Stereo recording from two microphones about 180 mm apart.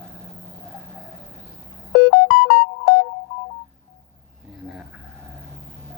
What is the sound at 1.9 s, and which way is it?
Music, 65° left (ahead or behind).